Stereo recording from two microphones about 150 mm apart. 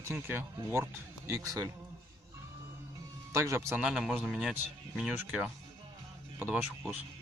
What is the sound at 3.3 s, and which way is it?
Speech, 20° right (ahead or behind).